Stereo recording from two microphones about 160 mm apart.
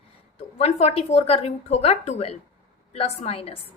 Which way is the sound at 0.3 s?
40° left (ahead or behind).